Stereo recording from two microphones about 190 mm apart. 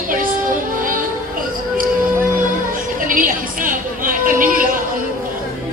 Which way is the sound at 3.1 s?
45° right (ahead or behind).